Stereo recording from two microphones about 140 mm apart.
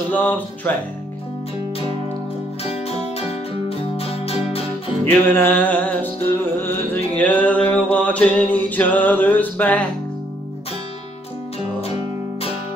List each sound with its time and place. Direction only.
0.1 s music: 10° left (ahead or behind)
2.7 s music: 45° left (ahead or behind)
5.0 s music: 15° left (ahead or behind)
7.2 s music: 10° left (ahead or behind)